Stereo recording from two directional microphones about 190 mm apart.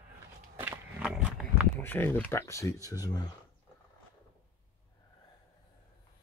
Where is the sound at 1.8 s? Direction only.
10° left (ahead or behind).